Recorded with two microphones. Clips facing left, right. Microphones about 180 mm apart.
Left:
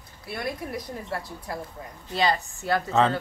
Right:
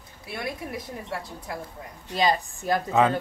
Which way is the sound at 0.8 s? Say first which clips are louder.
Left 1 dB; centre (ahead or behind).